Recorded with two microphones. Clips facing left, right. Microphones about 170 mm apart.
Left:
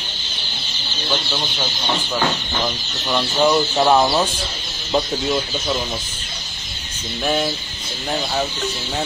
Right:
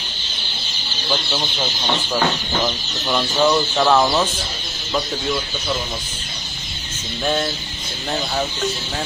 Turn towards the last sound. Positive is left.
turn(degrees=10)  # may be behind; listen again after turning